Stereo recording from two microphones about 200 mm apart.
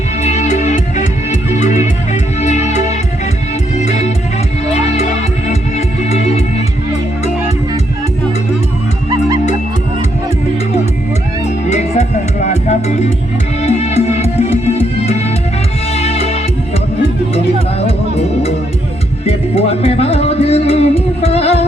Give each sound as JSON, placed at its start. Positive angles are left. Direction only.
{"t": 0.2, "sound": "music", "side_deg": 35}
{"t": 11.7, "sound": "music", "side_deg": 35}